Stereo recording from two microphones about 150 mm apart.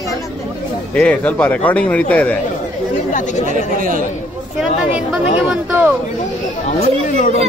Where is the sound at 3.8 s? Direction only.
65° right (ahead or behind).